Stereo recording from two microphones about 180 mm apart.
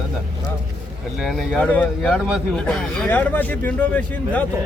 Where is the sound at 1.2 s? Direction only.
Centre (ahead or behind).